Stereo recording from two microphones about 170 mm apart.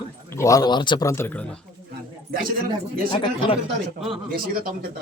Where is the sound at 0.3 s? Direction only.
15° left (ahead or behind).